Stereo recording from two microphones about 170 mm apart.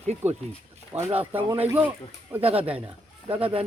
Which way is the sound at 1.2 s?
10° right (ahead or behind).